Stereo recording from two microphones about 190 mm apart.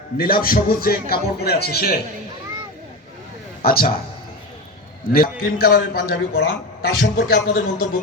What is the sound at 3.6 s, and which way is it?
Speech, 50° left (ahead or behind).